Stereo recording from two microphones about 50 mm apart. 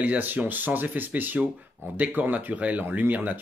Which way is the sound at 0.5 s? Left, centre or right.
Right.